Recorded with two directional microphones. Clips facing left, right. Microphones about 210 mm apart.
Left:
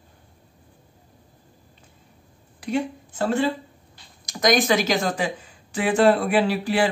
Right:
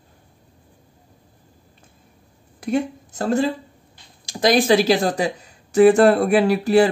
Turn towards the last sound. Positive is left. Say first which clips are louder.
# right 6 dB
turn(degrees=-45)  # may be behind; listen again after turning